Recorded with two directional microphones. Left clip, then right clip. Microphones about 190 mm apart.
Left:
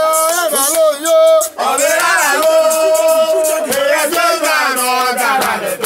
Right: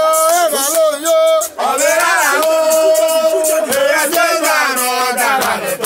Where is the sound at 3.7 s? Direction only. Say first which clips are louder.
Even; 10° right (ahead or behind).